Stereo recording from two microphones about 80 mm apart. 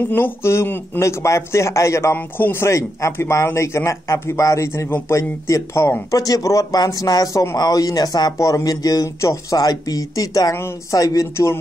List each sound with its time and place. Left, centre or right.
0.0 s a man's voice: left
2.1 s a man's voice: left
6.1 s speech: left
8.4 s speech: left
10.5 s a man's voice: left